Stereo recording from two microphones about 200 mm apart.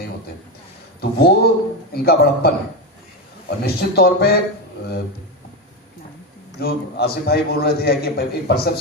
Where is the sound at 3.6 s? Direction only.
50° left (ahead or behind).